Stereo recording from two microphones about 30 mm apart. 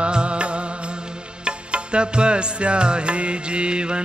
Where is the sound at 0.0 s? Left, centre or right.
Right.